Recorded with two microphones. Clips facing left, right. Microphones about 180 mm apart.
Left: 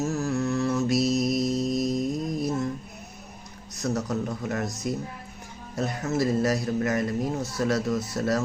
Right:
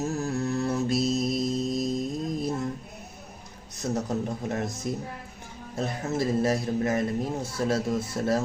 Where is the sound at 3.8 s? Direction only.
30° right (ahead or behind).